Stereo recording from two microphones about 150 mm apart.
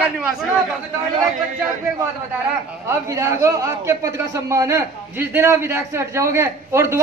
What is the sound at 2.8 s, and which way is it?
A man's voice, 20° right (ahead or behind).